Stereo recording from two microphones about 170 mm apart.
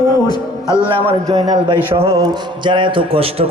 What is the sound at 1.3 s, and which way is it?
A man's voice, 25° right (ahead or behind).